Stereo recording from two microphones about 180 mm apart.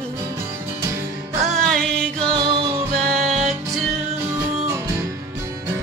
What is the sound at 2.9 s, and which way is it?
Music, 40° right (ahead or behind).